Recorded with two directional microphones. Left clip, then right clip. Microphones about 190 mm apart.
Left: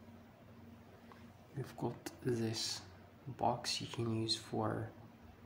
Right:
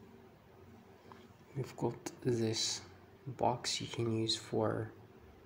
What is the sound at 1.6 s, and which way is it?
Speech, 15° right (ahead or behind).